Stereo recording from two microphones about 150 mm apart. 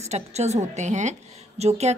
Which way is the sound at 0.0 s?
45° right (ahead or behind).